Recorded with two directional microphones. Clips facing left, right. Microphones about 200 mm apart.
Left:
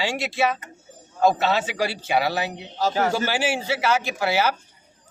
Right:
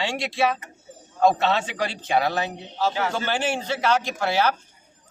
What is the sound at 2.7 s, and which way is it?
Speech, 40° left (ahead or behind).